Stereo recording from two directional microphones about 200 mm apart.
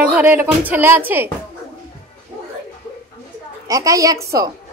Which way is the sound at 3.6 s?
15° right (ahead or behind).